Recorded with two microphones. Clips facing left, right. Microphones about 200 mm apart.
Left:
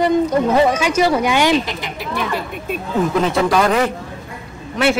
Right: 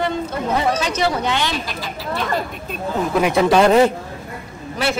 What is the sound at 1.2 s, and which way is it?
Speech, 15° left (ahead or behind).